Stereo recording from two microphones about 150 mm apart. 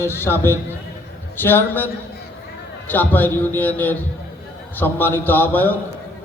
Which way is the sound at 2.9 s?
10° left (ahead or behind).